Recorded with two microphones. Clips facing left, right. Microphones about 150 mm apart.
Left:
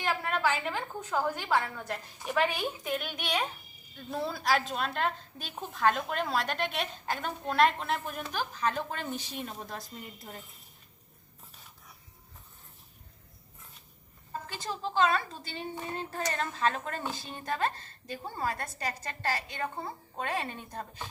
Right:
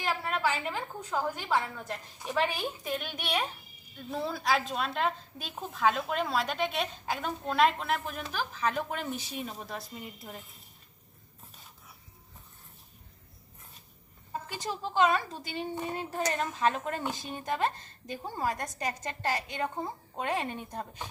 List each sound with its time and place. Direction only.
0.1 s a woman's voice: centre (ahead or behind)
14.5 s a child's voice: 15° right (ahead or behind)